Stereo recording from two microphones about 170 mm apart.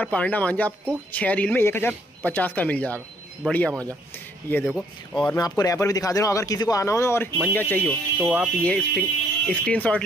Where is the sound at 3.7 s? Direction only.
20° right (ahead or behind).